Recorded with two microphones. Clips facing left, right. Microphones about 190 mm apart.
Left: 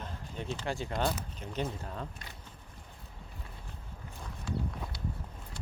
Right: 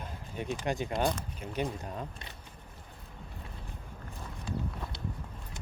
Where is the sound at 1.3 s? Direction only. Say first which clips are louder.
Right 2 dB; 15° right (ahead or behind).